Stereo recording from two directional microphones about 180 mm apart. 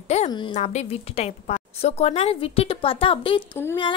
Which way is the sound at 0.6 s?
35° left (ahead or behind).